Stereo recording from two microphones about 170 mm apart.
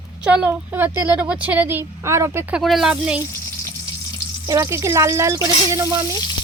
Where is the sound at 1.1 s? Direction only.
10° right (ahead or behind).